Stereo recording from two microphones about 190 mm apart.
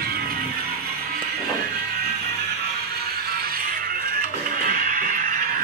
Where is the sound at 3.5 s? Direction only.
50° right (ahead or behind).